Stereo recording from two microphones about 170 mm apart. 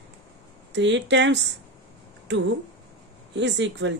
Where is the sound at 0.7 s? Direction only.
90° right.